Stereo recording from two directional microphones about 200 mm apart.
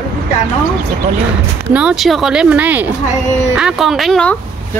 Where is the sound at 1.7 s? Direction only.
5° right (ahead or behind).